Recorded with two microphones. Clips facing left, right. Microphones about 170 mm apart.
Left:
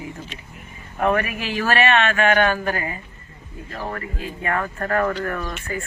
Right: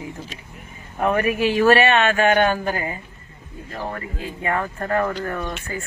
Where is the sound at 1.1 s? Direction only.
30° right (ahead or behind).